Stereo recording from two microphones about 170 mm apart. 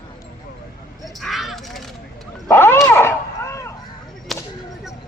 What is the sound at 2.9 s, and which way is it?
Artillery fire, 15° left (ahead or behind).